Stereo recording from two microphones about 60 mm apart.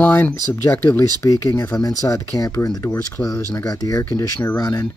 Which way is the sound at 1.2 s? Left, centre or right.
Left.